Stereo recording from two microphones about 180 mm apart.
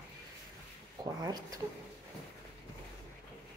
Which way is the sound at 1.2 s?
20° right (ahead or behind).